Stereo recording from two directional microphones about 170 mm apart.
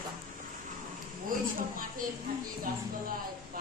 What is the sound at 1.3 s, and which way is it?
Speech, 55° right (ahead or behind).